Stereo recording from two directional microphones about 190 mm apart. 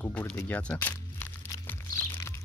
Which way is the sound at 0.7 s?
15° left (ahead or behind).